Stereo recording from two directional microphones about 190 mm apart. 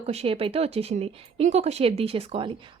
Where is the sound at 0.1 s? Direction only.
30° right (ahead or behind).